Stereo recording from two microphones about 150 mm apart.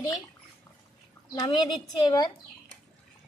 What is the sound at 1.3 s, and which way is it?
A woman's voice, 25° left (ahead or behind).